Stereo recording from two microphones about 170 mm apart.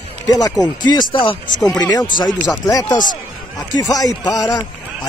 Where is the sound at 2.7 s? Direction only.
20° left (ahead or behind).